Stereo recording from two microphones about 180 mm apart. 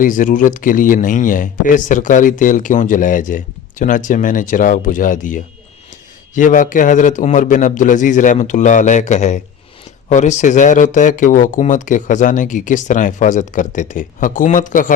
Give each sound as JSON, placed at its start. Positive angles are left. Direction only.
{"t": 0.0, "sound": "speech", "side_deg": 45}